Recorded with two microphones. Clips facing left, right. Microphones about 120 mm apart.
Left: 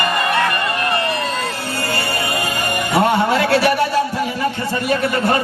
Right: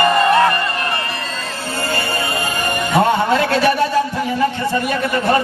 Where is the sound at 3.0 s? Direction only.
25° right (ahead or behind).